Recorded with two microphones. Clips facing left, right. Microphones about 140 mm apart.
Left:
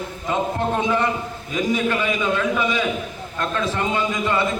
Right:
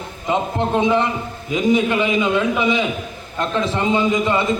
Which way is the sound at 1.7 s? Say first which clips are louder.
Right 5 dB; 15° right (ahead or behind).